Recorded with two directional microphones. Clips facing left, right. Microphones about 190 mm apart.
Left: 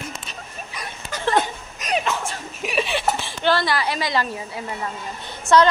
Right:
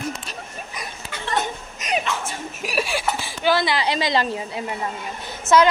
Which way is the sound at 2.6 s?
5° right (ahead or behind).